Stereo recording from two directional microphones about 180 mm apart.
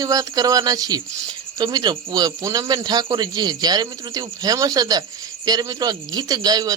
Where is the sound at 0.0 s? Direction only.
20° right (ahead or behind).